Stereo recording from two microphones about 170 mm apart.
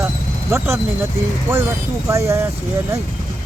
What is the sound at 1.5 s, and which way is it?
Speech, 15° right (ahead or behind).